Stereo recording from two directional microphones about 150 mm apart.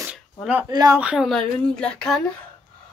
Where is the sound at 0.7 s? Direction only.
25° right (ahead or behind).